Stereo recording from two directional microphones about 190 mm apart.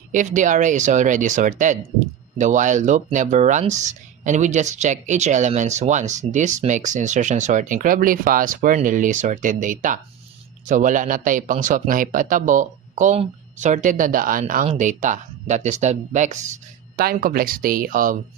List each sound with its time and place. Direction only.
0.1 s speech: 40° right (ahead or behind)
17.0 s speech: 50° right (ahead or behind)